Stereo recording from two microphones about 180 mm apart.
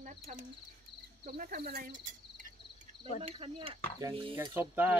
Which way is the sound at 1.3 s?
55° right (ahead or behind).